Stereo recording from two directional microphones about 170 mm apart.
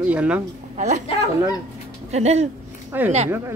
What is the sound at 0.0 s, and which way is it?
Speech, 10° right (ahead or behind).